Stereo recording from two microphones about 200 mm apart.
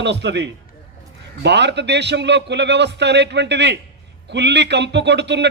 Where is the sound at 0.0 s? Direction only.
60° right (ahead or behind).